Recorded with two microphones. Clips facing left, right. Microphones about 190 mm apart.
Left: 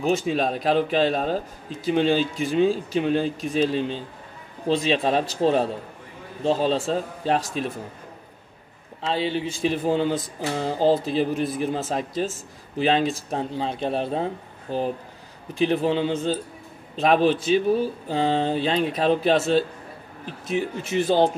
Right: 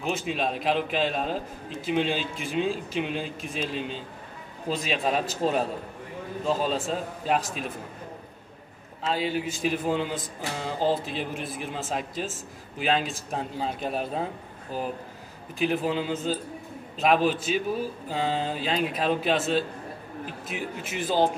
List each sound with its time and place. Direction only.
0.1 s a man's voice: 35° left (ahead or behind)
9.0 s a man's voice: 30° left (ahead or behind)
20.4 s a man's voice: 35° left (ahead or behind)